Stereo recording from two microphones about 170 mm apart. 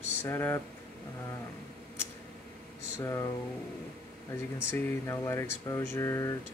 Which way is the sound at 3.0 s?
20° left (ahead or behind).